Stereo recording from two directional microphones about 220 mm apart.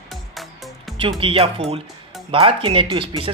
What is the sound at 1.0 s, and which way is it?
Speech, 25° right (ahead or behind).